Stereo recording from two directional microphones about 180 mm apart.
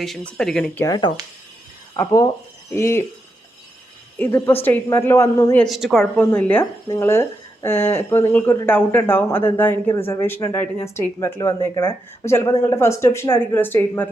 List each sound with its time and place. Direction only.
0.0 s speech: 5° left (ahead or behind)
0.9 s speech: 20° left (ahead or behind)
4.2 s speech: 10° left (ahead or behind)
5.6 s speech: centre (ahead or behind)